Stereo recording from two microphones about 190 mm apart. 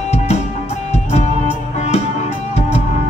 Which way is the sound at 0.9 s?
35° left (ahead or behind).